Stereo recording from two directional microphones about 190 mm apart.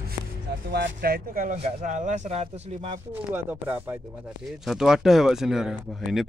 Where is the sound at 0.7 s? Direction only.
60° right (ahead or behind); by 3.0 s 30° right (ahead or behind).